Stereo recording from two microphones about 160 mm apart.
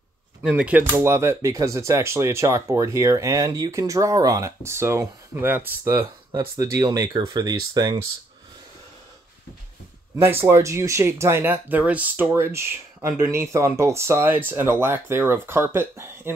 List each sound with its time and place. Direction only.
0.4 s speech: 5° right (ahead or behind); by 8.0 s 25° right (ahead or behind)
10.1 s speech: 15° right (ahead or behind)